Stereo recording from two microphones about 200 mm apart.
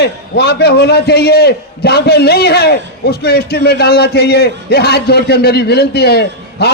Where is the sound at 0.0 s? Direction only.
55° left (ahead or behind).